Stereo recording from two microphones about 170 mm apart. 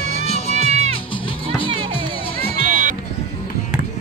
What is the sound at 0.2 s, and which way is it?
Music, 35° left (ahead or behind).